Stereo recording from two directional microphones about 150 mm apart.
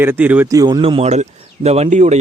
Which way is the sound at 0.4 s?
25° right (ahead or behind).